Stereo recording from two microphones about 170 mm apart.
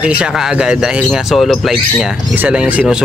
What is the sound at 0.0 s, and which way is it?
Speech, 5° right (ahead or behind).